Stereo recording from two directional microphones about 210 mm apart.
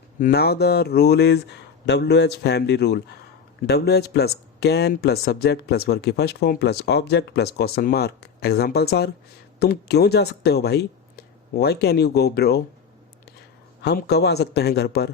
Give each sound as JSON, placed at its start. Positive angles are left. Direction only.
{"t": 0.2, "sound": "speech", "side_deg": 45}
{"t": 13.8, "sound": "speech", "side_deg": 50}